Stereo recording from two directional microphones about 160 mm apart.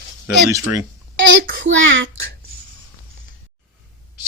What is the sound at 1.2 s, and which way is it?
Speech, 65° right (ahead or behind).